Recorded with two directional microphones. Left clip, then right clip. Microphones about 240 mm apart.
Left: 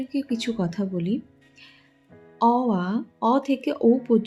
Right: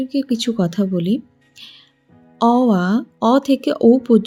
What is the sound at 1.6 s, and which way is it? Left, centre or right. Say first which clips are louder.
Music: right 11 dB; right.